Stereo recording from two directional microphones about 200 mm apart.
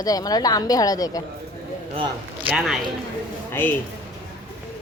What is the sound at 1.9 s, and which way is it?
Speech, 25° right (ahead or behind).